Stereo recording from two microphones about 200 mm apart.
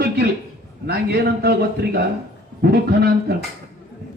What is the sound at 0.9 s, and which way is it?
A man's voice, 55° right (ahead or behind).